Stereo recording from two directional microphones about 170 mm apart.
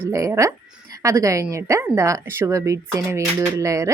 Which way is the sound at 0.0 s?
20° right (ahead or behind).